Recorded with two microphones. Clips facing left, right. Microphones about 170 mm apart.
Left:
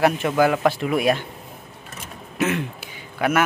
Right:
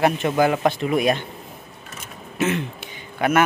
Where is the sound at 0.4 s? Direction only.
20° right (ahead or behind).